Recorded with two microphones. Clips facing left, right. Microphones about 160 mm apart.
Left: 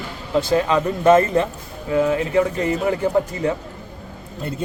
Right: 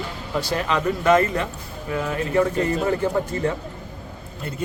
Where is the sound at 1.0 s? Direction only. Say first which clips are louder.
Left 5 dB; 25° left (ahead or behind).